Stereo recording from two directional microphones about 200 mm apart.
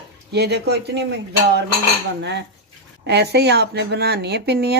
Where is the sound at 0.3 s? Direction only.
55° right (ahead or behind).